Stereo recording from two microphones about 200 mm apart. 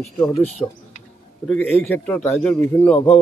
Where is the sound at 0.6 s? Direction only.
15° left (ahead or behind).